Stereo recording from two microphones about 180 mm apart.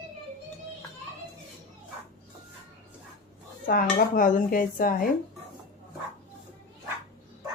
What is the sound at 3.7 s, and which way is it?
Dishes, 50° left (ahead or behind).